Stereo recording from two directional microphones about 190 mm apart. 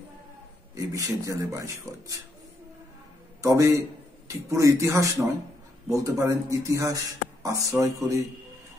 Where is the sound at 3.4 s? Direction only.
15° right (ahead or behind).